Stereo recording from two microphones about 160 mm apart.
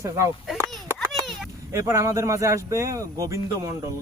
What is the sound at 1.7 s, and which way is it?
Speech, 20° right (ahead or behind).